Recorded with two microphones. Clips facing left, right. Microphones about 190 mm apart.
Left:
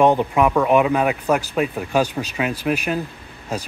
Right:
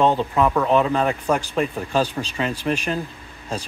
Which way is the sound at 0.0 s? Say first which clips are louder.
Left 3 dB; 15° left (ahead or behind).